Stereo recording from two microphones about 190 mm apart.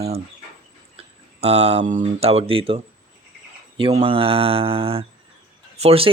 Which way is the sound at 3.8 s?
30° right (ahead or behind).